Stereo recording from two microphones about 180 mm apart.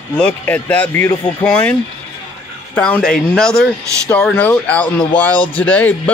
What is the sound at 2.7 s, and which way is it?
Speech, 5° left (ahead or behind).